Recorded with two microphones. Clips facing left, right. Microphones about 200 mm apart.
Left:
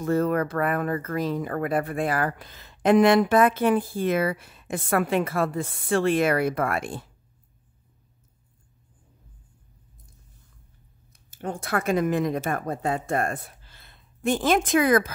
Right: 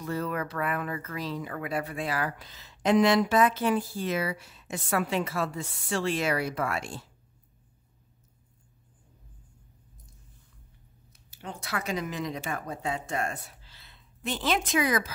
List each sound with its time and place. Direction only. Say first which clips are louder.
0.0 s speech: left 9 dB; 50° left (ahead or behind)
11.2 s speech: left 8 dB; 50° left (ahead or behind)